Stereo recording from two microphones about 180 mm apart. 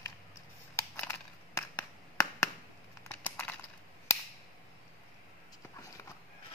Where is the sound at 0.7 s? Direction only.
10° left (ahead or behind).